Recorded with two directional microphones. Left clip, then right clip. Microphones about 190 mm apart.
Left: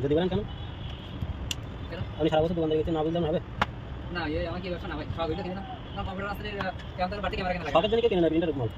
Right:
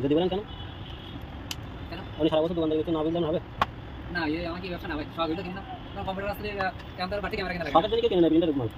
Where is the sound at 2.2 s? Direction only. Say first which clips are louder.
Right 1 dB; centre (ahead or behind).